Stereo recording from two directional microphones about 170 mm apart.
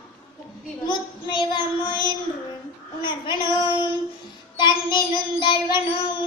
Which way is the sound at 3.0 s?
25° left (ahead or behind).